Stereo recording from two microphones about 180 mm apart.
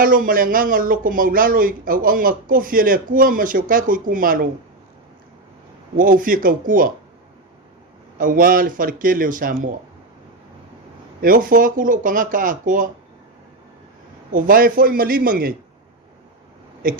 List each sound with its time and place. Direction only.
0.0 s speech: 50° right (ahead or behind)
6.0 s speech: 50° right (ahead or behind)
8.2 s speech: 50° right (ahead or behind)
11.2 s speech: 50° right (ahead or behind)
14.3 s speech: 50° right (ahead or behind)
16.8 s speech: 50° right (ahead or behind)